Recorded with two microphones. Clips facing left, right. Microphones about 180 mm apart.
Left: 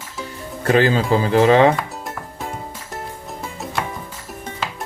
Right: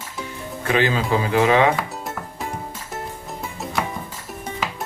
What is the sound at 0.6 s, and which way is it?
Speech, 40° left (ahead or behind).